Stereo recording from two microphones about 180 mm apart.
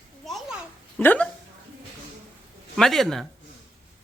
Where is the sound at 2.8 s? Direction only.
Centre (ahead or behind).